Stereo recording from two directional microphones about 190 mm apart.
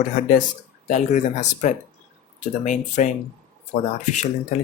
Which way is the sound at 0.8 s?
40° left (ahead or behind).